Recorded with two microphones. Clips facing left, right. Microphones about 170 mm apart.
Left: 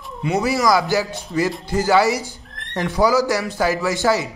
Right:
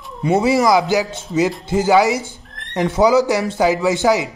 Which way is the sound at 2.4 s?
Centre (ahead or behind).